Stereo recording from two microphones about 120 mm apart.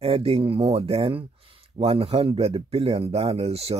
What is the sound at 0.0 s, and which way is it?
Speech, 50° right (ahead or behind).